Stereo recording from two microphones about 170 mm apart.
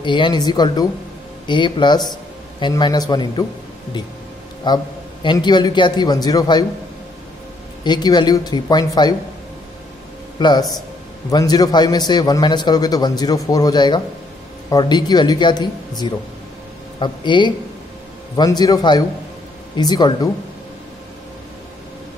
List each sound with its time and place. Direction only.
0.0 s a man's voice: 25° left (ahead or behind)
4.7 s a man's voice: 25° left (ahead or behind)
7.8 s a man's voice: 25° left (ahead or behind)
10.4 s a man's voice: 25° left (ahead or behind)